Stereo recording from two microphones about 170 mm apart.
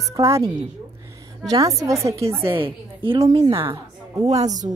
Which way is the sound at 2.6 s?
30° right (ahead or behind).